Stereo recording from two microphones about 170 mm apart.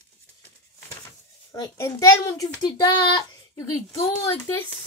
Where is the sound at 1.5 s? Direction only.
20° left (ahead or behind).